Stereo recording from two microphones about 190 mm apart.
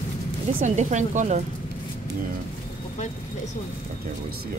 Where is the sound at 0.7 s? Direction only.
40° right (ahead or behind).